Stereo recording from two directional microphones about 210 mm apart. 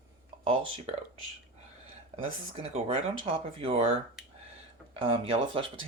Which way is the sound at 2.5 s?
30° right (ahead or behind).